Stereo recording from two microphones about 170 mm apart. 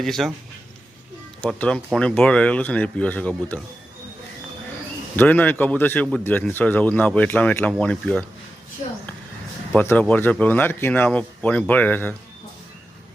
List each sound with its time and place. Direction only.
0.0 s speech: centre (ahead or behind)
1.4 s speech: 5° left (ahead or behind)
5.1 s speech: 10° left (ahead or behind)
9.7 s speech: 10° left (ahead or behind)